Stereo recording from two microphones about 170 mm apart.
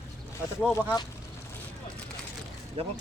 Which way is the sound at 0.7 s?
15° left (ahead or behind).